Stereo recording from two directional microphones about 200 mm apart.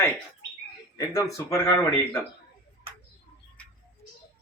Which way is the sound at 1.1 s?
15° left (ahead or behind).